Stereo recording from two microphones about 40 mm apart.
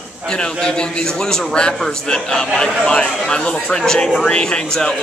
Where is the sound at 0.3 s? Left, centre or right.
Centre.